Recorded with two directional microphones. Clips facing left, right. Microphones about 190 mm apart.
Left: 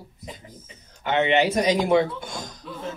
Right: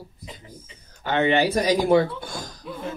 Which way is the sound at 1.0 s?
20° left (ahead or behind).